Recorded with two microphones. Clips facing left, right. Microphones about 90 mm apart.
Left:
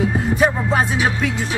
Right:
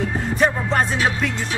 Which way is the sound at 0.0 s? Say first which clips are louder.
Left 3 dB; 5° left (ahead or behind).